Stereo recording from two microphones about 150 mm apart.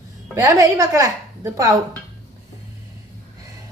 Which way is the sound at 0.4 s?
20° right (ahead or behind).